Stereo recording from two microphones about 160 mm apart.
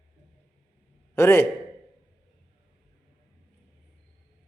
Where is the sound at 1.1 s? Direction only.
15° left (ahead or behind).